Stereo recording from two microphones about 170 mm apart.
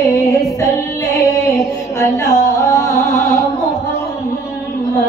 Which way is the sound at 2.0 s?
20° left (ahead or behind).